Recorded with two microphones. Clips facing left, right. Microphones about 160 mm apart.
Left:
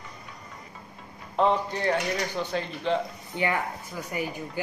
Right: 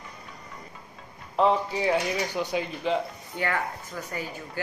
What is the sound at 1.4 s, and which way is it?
Speech, 5° right (ahead or behind).